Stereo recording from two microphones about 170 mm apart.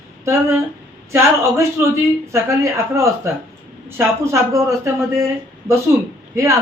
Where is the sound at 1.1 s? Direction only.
15° right (ahead or behind).